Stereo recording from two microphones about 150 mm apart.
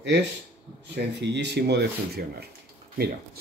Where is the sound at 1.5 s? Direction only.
90° right.